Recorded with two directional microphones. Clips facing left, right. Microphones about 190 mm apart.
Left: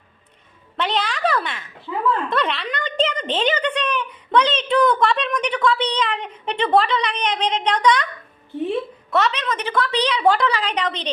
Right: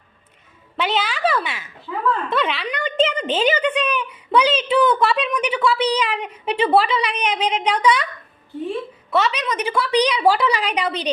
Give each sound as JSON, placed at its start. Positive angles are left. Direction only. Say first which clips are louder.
{"t": 0.8, "sound": "a sound", "louder": "right 1 dB", "side_deg": -5}
{"t": 2.3, "sound": "a woman's voice", "louder": "right 1 dB", "side_deg": -5}
{"t": 9.0, "sound": "a woman's voice", "louder": "right 1 dB", "side_deg": 0}